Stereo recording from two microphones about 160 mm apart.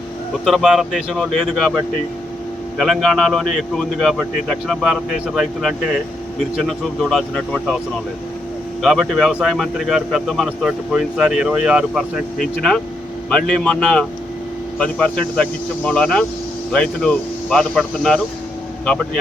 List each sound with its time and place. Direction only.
0.4 s speech: centre (ahead or behind)
2.7 s speech: centre (ahead or behind)
8.8 s speech: centre (ahead or behind)
13.3 s speech: 5° left (ahead or behind)